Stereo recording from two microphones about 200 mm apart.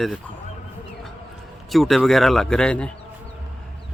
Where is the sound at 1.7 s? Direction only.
Centre (ahead or behind).